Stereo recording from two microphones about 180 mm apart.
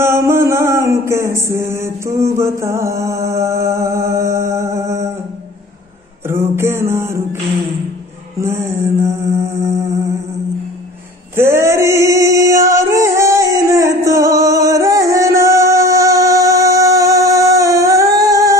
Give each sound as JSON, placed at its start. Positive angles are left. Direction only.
{"t": 0.0, "sound": "mantra", "side_deg": -15}
{"t": 6.2, "sound": "a sound", "side_deg": -15}
{"t": 8.4, "sound": "mantra", "side_deg": -15}
{"t": 11.3, "sound": "male singing", "side_deg": -15}